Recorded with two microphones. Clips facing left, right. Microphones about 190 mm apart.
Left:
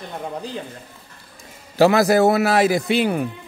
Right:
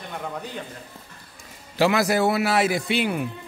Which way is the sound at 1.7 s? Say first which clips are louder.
Left 6 dB; 40° left (ahead or behind).